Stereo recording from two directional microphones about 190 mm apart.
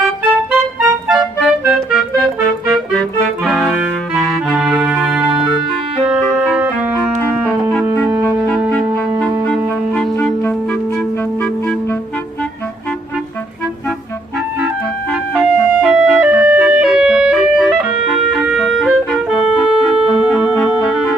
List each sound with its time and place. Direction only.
0.5 s music: centre (ahead or behind)
6.5 s music: 5° right (ahead or behind)
9.9 s clarinet: 5° left (ahead or behind)
15.3 s music: 5° right (ahead or behind)
18.3 s organ: centre (ahead or behind)